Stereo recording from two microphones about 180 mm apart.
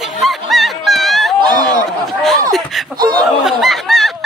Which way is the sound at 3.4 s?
Centre (ahead or behind).